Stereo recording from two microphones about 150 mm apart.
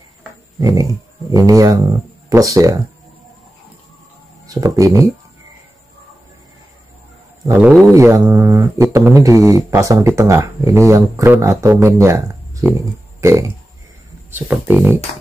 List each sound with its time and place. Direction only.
0.6 s a sound: 25° right (ahead or behind)
1.3 s speech: 25° right (ahead or behind)
4.5 s speech: 25° right (ahead or behind)
7.4 s speech: 15° right (ahead or behind)
14.3 s speech: 10° right (ahead or behind)